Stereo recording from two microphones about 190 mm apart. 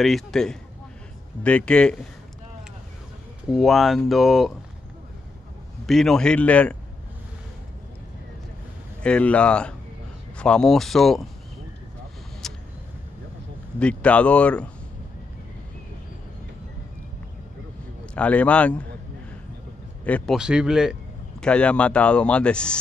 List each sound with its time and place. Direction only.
0.0 s speech: centre (ahead or behind)
3.5 s speech: centre (ahead or behind)
5.9 s speech: centre (ahead or behind)
9.0 s speech: 5° left (ahead or behind)
13.7 s speech: 5° left (ahead or behind)
18.1 s speech: 5° left (ahead or behind)
20.1 s speech: 5° left (ahead or behind)
20.3 s speech: 5° right (ahead or behind)